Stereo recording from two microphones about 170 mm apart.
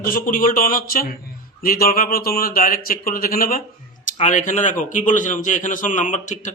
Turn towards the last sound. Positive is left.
turn(degrees=45)  # may be behind; listen again after turning